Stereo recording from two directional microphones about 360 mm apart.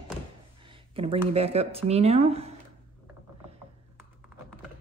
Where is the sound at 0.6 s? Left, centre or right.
Centre.